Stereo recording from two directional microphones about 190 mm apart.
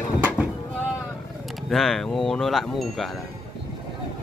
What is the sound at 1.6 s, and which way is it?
Speech, centre (ahead or behind).